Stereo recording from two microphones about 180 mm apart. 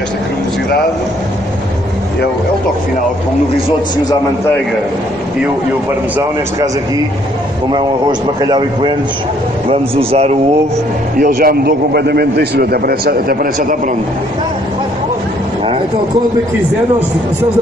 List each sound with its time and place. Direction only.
7.7 s a man's voice: 25° right (ahead or behind)
11.1 s a man's voice: 55° right (ahead or behind)